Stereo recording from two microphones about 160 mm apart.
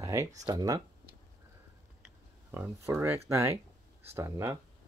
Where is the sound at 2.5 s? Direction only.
15° right (ahead or behind).